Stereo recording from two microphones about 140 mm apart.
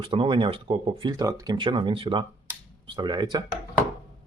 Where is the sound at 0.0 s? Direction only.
40° right (ahead or behind).